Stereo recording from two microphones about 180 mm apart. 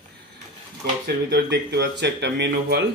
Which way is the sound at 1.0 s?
65° right (ahead or behind).